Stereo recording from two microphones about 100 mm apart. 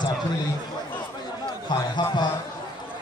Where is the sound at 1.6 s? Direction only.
50° left (ahead or behind).